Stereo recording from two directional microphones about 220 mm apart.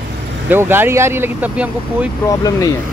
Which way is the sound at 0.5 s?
10° right (ahead or behind).